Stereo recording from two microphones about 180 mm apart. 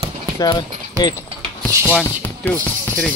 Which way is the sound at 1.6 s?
10° left (ahead or behind).